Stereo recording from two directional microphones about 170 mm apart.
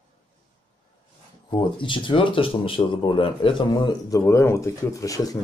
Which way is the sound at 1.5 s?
30° left (ahead or behind).